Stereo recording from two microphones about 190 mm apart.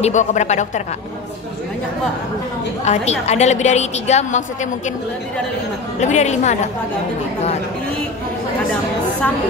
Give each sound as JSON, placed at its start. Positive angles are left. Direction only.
{"t": 0.0, "sound": "a woman's voice", "side_deg": 40}
{"t": 2.8, "sound": "a woman's voice", "side_deg": 35}
{"t": 5.9, "sound": "a woman's voice", "side_deg": 40}